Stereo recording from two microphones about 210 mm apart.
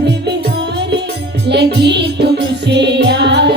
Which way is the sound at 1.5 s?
55° right (ahead or behind).